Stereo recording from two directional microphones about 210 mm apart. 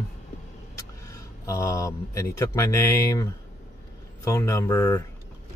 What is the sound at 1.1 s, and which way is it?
Speech, 15° left (ahead or behind).